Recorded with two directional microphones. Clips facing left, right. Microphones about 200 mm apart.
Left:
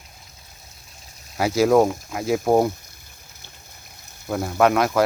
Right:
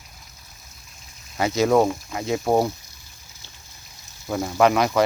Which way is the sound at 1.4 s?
5° left (ahead or behind).